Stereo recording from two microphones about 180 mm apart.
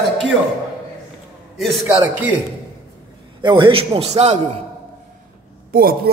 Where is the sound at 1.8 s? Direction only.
10° right (ahead or behind).